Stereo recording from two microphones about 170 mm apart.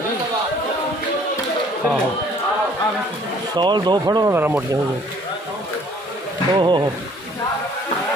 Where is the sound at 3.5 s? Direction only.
25° right (ahead or behind).